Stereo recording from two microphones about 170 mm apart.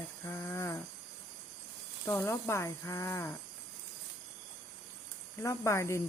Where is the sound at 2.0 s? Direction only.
15° left (ahead or behind).